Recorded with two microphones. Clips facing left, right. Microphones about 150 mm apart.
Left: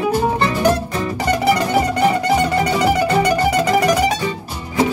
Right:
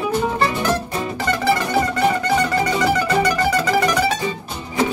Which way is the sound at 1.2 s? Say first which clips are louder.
Left 3 dB; 15° left (ahead or behind).